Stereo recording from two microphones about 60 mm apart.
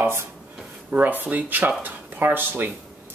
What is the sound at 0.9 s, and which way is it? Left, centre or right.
Speech, right.